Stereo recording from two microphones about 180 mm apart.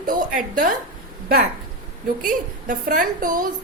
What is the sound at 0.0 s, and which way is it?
Speech, 50° right (ahead or behind).